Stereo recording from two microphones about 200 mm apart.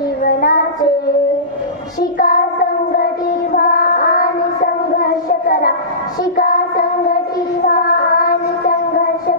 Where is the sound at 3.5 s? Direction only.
45° left (ahead or behind).